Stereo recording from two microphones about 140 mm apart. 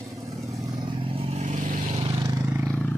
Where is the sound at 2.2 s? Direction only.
20° right (ahead or behind).